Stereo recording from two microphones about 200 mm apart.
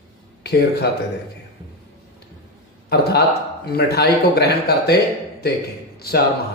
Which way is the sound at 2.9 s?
55° left (ahead or behind).